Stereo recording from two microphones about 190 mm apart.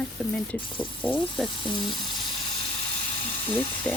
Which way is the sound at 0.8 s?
25° left (ahead or behind).